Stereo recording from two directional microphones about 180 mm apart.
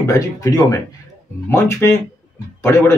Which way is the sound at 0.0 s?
20° left (ahead or behind).